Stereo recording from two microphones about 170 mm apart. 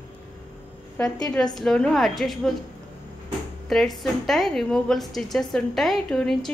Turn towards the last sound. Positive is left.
turn(degrees=5)  # may be behind; listen again after turning